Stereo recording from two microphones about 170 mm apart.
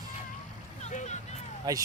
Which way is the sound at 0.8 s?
45° left (ahead or behind).